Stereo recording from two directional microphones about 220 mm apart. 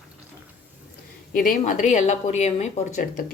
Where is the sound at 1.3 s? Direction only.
40° left (ahead or behind).